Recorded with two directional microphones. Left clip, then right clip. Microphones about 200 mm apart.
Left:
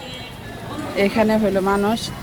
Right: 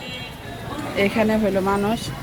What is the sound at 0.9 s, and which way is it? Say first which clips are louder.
Speech: left 2 dB; 5° left (ahead or behind).